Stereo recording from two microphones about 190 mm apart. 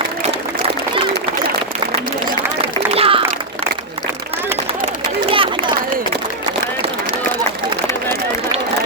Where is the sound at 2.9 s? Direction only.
30° right (ahead or behind).